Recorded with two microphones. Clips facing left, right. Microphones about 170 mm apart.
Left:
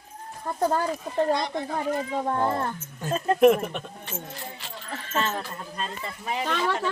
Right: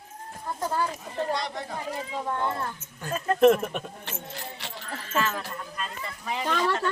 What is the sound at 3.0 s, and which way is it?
Speech, 25° left (ahead or behind).